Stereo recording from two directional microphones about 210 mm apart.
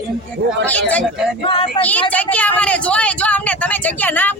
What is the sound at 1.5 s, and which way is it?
Speech, 25° left (ahead or behind).